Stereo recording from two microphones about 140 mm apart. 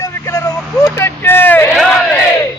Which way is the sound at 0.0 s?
20° left (ahead or behind).